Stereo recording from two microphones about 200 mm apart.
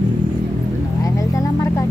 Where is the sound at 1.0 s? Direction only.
15° left (ahead or behind).